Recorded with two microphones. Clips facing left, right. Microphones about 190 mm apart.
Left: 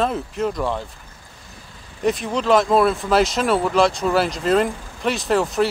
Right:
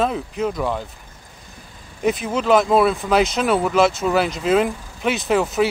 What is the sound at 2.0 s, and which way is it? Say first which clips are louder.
Speech: even; centre (ahead or behind).